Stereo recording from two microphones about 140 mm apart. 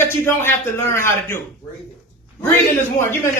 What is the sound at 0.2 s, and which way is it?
A woman's voice, 20° left (ahead or behind).